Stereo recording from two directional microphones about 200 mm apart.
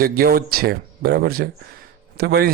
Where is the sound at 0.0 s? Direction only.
45° right (ahead or behind).